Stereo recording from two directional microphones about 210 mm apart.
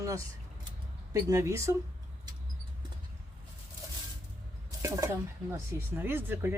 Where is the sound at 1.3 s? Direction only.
15° right (ahead or behind).